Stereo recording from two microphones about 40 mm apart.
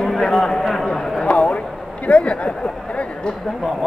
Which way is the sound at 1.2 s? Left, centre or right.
Left.